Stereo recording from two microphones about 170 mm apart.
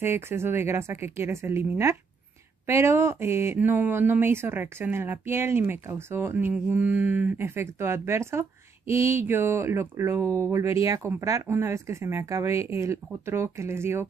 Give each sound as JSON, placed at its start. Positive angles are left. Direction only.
{"t": 0.0, "sound": "speech", "side_deg": -15}